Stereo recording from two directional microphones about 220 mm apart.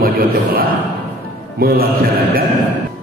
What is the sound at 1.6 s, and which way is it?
Mantra, 45° right (ahead or behind).